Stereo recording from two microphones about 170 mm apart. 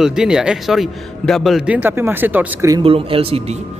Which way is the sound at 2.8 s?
35° right (ahead or behind).